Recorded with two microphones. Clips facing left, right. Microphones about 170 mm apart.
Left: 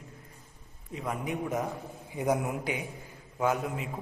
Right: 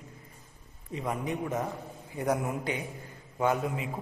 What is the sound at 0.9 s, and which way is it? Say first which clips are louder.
A man's voice: right 1 dB; centre (ahead or behind).